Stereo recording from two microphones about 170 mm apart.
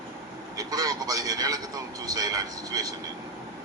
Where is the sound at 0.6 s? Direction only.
20° right (ahead or behind).